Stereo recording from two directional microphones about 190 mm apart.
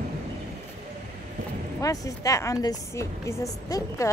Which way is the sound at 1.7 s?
20° left (ahead or behind).